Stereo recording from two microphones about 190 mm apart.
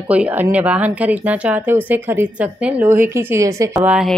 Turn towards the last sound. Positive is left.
turn(degrees=-5)  # may be behind; listen again after turning